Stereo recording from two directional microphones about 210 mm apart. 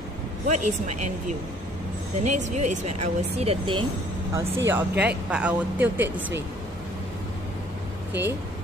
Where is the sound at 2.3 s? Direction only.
35° right (ahead or behind).